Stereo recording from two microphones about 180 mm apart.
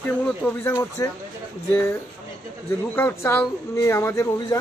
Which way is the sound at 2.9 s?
10° left (ahead or behind).